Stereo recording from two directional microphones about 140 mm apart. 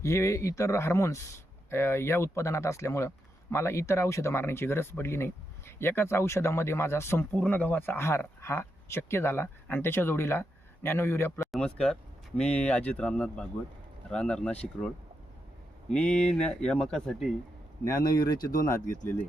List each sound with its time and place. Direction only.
0.0 s speech: 20° left (ahead or behind)
11.5 s speech: 5° left (ahead or behind)
16.2 s speech: 5° left (ahead or behind)
17.8 s speech: 20° left (ahead or behind)
18.3 s speech: 90° left
18.6 s speech: 20° left (ahead or behind)